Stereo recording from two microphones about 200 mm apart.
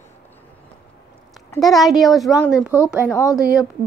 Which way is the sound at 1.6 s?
Centre (ahead or behind).